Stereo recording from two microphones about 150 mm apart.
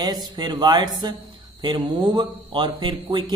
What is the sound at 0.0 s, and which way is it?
Speech, 25° right (ahead or behind).